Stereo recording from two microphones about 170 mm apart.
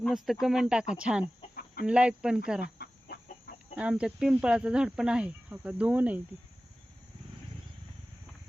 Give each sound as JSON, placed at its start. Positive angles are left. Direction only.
{"t": 0.0, "sound": "speech", "side_deg": 0}
{"t": 1.5, "sound": "chicken", "side_deg": 55}
{"t": 1.9, "sound": "speech", "side_deg": -5}
{"t": 2.7, "sound": "chicken", "side_deg": 70}
{"t": 3.8, "sound": "speech", "side_deg": -5}